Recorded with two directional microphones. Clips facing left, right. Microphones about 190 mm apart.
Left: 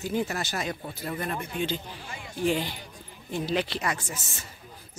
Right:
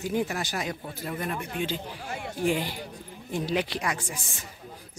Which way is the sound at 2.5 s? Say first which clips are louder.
Even; 10° right (ahead or behind).